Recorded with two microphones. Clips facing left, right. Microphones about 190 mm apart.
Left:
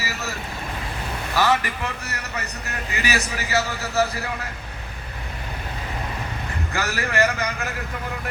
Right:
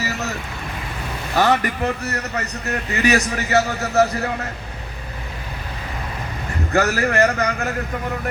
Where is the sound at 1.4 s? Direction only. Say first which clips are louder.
Right 4 dB; 40° right (ahead or behind).